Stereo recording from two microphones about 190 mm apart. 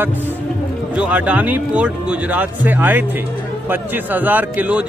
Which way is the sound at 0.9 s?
5° right (ahead or behind).